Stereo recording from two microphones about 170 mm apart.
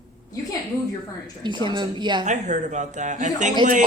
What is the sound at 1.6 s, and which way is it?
Speech, 25° right (ahead or behind).